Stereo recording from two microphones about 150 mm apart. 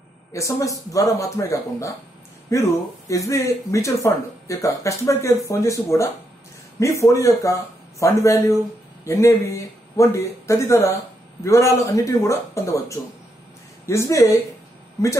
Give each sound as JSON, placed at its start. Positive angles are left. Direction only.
{"t": 0.3, "sound": "speech", "side_deg": 20}